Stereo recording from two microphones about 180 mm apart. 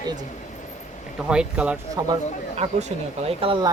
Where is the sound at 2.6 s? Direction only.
35° right (ahead or behind).